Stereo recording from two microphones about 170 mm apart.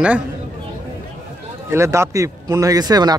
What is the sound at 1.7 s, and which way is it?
Speech, 15° right (ahead or behind).